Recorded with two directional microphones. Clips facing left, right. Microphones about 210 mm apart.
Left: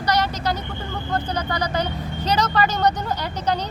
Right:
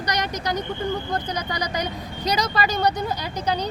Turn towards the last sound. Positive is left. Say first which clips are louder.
# left 2 dB
turn(degrees=-10)  # may be behind; listen again after turning